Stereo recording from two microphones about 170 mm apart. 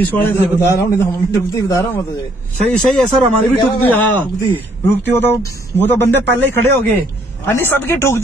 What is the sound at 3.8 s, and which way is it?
Speech, 10° left (ahead or behind).